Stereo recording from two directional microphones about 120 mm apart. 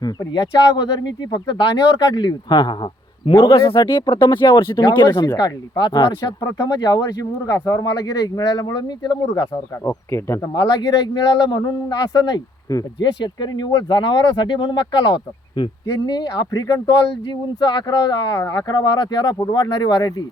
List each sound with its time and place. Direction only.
0.0 s speech: 35° left (ahead or behind)
9.8 s speech: 20° left (ahead or behind)
10.5 s speech: 35° left (ahead or behind)